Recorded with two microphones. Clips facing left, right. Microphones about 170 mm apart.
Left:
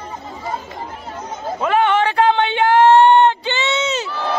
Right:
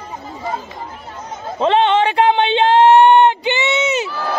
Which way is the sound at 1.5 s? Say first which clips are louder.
Right 2 dB; 25° right (ahead or behind).